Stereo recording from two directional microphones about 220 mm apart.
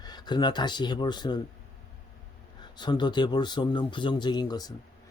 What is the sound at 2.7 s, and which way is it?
Speech, 20° left (ahead or behind).